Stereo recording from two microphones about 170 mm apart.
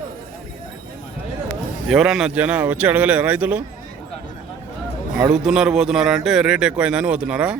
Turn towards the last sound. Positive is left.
turn(degrees=-5)  # may be behind; listen again after turning